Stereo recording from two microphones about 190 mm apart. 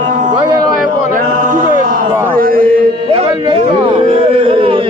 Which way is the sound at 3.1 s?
30° right (ahead or behind).